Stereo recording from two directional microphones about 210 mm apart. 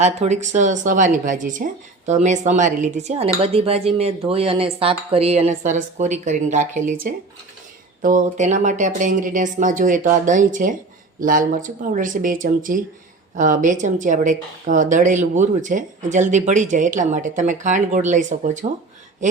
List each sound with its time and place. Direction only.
0.0 s speech: 30° right (ahead or behind)